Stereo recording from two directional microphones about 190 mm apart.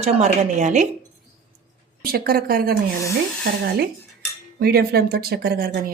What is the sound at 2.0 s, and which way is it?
Speech, 50° right (ahead or behind).